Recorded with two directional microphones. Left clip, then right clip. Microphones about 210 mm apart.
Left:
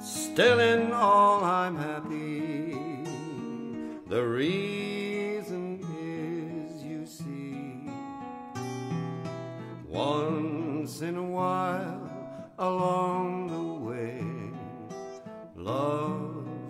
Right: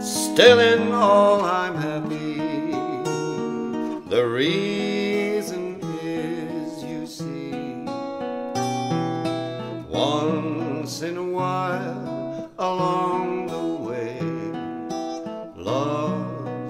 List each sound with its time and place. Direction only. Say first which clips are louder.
0.3 s music: right 8 dB; 35° left (ahead or behind)
4.1 s music: right 7 dB; 35° left (ahead or behind)
9.9 s music: right 6 dB; 40° left (ahead or behind)
15.7 s music: right 5 dB; 45° left (ahead or behind)